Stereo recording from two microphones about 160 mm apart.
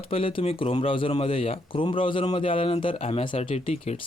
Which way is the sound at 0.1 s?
35° left (ahead or behind).